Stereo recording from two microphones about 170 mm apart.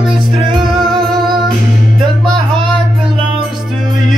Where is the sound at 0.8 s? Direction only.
Centre (ahead or behind).